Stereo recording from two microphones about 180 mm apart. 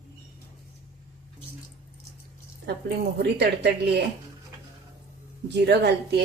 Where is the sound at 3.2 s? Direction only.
65° right (ahead or behind).